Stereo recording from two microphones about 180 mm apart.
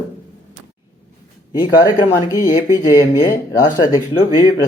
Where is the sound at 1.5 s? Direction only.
25° left (ahead or behind).